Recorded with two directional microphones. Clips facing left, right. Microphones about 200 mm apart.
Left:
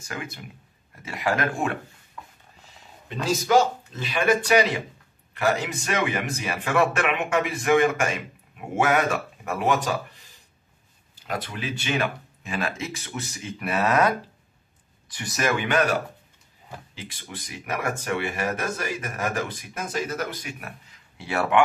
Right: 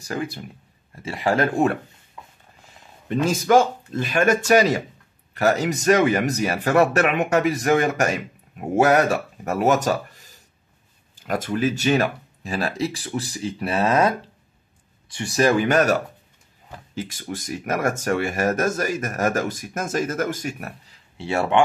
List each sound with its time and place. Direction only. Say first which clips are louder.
0.0 s speech: right 7 dB; 35° right (ahead or behind)
3.3 s speech: right 2 dB; 50° right (ahead or behind)
21.2 s speech: right 2 dB; 25° right (ahead or behind)